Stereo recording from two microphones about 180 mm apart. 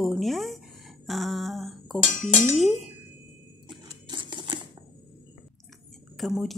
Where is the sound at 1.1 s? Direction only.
Centre (ahead or behind).